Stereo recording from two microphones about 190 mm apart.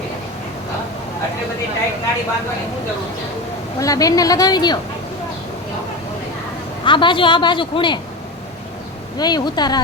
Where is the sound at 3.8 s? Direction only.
20° left (ahead or behind).